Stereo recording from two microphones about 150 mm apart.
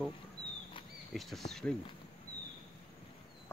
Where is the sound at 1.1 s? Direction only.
Centre (ahead or behind).